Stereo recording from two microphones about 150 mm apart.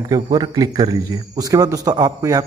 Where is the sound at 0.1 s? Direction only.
30° right (ahead or behind).